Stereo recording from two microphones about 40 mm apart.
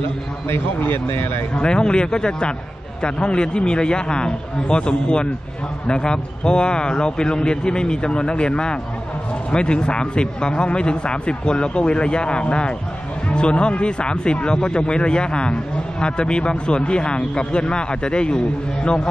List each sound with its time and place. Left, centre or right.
1.5 s a man's voice: left